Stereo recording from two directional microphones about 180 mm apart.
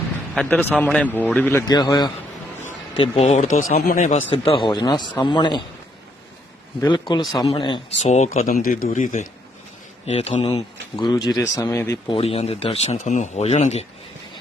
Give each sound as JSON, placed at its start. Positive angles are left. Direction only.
{"t": 0.3, "sound": "a man's voice", "side_deg": 10}
{"t": 1.7, "sound": "a man's voice", "side_deg": 25}
{"t": 3.2, "sound": "speech", "side_deg": 40}
{"t": 4.3, "sound": "a man's voice", "side_deg": 30}
{"t": 7.4, "sound": "speech", "side_deg": 30}
{"t": 8.0, "sound": "speech", "side_deg": 40}
{"t": 10.9, "sound": "a man's voice", "side_deg": 25}
{"t": 12.0, "sound": "speech", "side_deg": 30}